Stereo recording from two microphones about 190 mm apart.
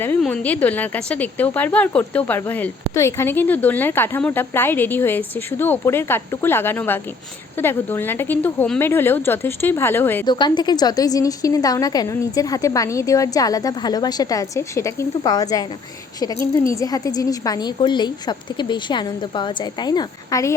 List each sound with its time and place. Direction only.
0.0 s a woman's voice: 10° left (ahead or behind)
10.2 s a woman's voice: 25° left (ahead or behind)
16.8 s a woman's voice: 20° left (ahead or behind)